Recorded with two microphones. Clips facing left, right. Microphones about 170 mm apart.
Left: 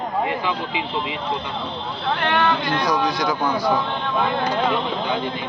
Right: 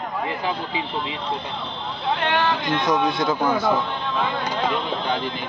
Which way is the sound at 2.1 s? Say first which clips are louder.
Left 2 dB; 25° right (ahead or behind).